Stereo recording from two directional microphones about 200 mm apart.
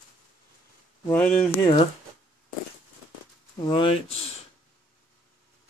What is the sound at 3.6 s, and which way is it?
Speech, 25° left (ahead or behind).